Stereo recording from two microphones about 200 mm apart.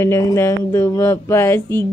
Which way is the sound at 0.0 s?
15° left (ahead or behind).